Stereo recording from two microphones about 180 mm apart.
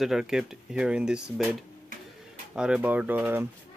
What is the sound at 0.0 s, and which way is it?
Speech, centre (ahead or behind).